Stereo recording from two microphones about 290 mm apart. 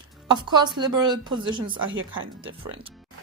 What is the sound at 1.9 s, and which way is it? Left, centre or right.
Speech, right.